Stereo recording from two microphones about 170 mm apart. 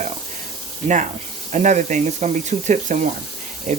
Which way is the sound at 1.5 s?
45° right (ahead or behind).